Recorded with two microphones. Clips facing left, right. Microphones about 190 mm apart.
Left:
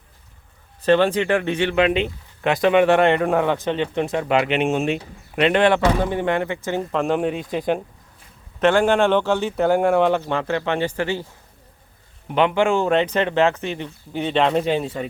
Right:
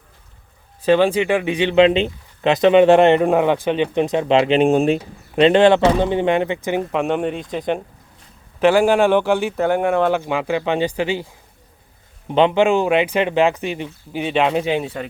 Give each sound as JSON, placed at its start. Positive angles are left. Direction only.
{"t": 0.8, "sound": "speech", "side_deg": -10}
{"t": 7.0, "sound": "speech", "side_deg": 0}
{"t": 8.5, "sound": "speech", "side_deg": -10}
{"t": 9.6, "sound": "speech", "side_deg": 0}